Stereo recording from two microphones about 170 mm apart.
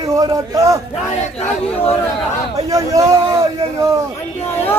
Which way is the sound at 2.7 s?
20° right (ahead or behind).